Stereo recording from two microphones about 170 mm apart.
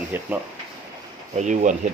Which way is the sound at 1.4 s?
45° right (ahead or behind).